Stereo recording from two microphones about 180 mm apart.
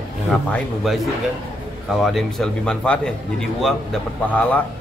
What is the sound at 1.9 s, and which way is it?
A man's voice, centre (ahead or behind).